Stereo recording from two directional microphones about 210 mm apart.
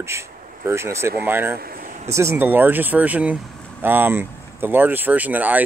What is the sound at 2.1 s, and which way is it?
Speech, 15° right (ahead or behind).